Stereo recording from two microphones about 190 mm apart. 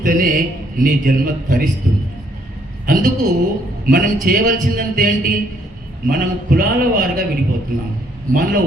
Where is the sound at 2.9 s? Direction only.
40° right (ahead or behind).